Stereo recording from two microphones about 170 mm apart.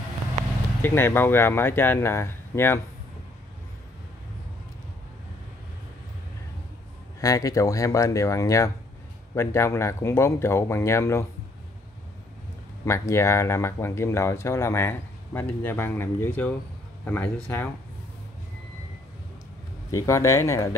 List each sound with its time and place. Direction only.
0.8 s speech: 15° left (ahead or behind)
7.2 s speech: 20° left (ahead or behind)
12.8 s speech: 15° left (ahead or behind)
19.9 s speech: 15° left (ahead or behind)